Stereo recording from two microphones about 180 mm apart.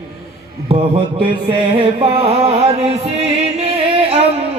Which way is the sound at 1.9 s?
30° right (ahead or behind).